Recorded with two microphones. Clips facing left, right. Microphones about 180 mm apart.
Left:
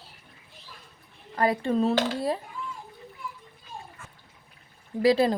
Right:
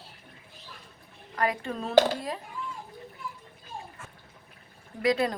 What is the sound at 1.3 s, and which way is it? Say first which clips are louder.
Speech: left 6 dB; 30° left (ahead or behind).